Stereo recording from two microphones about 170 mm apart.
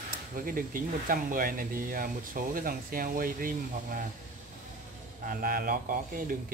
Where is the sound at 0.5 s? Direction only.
55° right (ahead or behind).